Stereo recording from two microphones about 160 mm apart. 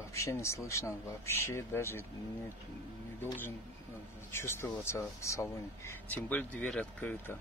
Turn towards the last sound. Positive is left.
turn(degrees=10)  # may be behind; listen again after turning